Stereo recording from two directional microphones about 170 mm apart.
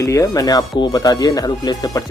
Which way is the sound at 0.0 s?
20° left (ahead or behind).